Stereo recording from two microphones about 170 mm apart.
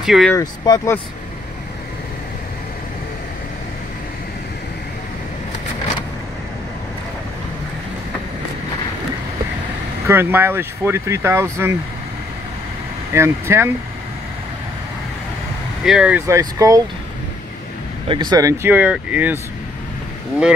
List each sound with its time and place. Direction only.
0.0 s speech: 5° right (ahead or behind)
0.3 s speech: 15° left (ahead or behind)
10.0 s speech: 15° right (ahead or behind)
13.1 s speech: 15° right (ahead or behind)
15.8 s speech: 5° right (ahead or behind)
16.2 s speech: 15° right (ahead or behind)
18.0 s speech: 30° right (ahead or behind); by 19.3 s 10° right (ahead or behind)